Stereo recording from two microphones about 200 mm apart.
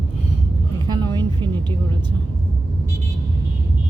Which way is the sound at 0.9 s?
20° right (ahead or behind).